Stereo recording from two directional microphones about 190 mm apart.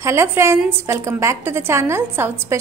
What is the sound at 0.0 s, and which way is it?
A woman's voice, 15° right (ahead or behind).